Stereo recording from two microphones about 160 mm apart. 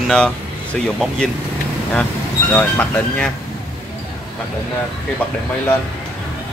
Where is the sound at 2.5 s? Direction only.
10° left (ahead or behind).